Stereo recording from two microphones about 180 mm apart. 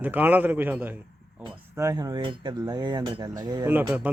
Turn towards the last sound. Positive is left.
turn(degrees=-5)  # may be behind; listen again after turning